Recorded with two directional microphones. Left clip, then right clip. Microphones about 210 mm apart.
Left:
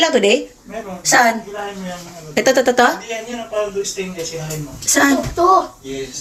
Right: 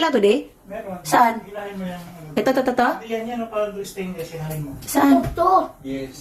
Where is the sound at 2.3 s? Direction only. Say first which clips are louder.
Left 6 dB; 10° right (ahead or behind).